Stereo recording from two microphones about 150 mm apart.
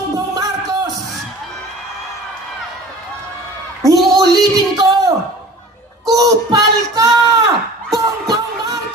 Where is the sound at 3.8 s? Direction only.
25° right (ahead or behind).